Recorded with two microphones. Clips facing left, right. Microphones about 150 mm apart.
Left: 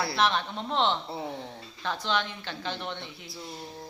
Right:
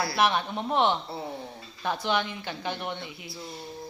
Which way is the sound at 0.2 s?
15° right (ahead or behind).